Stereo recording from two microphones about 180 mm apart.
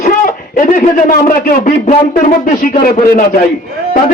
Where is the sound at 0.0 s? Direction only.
45° left (ahead or behind).